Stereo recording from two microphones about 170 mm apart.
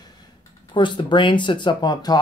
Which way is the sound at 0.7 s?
30° left (ahead or behind).